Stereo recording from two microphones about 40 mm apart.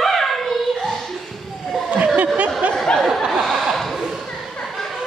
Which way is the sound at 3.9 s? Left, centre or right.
Centre.